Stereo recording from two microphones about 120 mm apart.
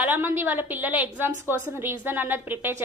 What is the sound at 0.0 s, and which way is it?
A woman's voice, 15° right (ahead or behind).